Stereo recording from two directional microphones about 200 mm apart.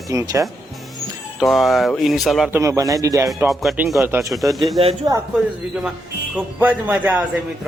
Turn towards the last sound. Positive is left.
turn(degrees=-5)  # may be behind; listen again after turning